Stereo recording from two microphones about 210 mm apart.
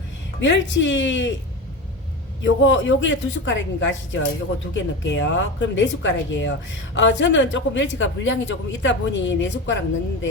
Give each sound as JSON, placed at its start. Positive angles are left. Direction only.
{"t": 0.4, "sound": "a woman's voice", "side_deg": 60}
{"t": 2.4, "sound": "a woman's voice", "side_deg": 60}